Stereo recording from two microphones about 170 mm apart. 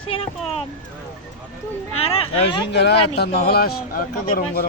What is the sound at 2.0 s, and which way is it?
Speech, 30° left (ahead or behind).